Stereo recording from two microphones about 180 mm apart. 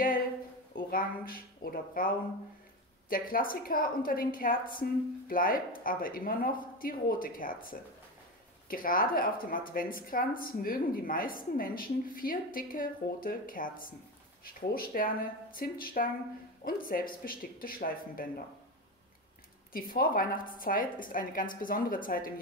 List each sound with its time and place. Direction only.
0.7 s speech: 55° left (ahead or behind)
3.1 s speech: 50° left (ahead or behind)
19.7 s speech: 55° left (ahead or behind)